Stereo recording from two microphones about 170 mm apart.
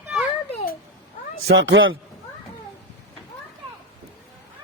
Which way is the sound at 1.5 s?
90° right.